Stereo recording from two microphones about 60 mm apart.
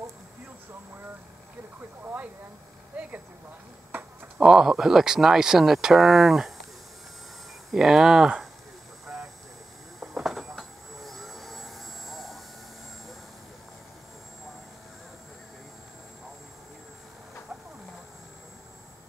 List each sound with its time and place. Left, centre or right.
2.9 s speech: right
4.4 s speech: centre
7.7 s speech: centre
9.0 s vehicle: centre
9.9 s a sound: centre